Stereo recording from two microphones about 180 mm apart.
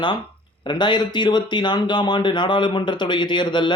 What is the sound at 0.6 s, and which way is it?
Speech, 25° left (ahead or behind).